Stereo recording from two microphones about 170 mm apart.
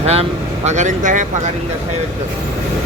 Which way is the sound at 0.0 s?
35° right (ahead or behind).